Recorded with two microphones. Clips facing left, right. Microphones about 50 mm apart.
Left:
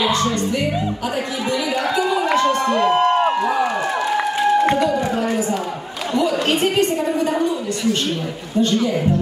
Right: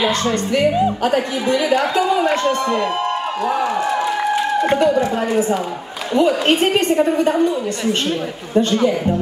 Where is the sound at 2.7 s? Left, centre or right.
Left.